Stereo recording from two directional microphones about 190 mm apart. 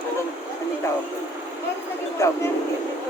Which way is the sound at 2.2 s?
15° left (ahead or behind).